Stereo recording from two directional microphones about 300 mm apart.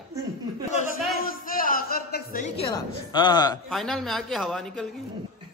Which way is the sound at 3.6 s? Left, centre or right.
Centre.